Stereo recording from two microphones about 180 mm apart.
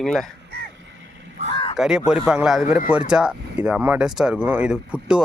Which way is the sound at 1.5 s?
30° left (ahead or behind).